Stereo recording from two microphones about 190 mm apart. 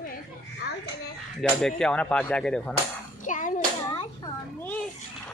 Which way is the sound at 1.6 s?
5° left (ahead or behind).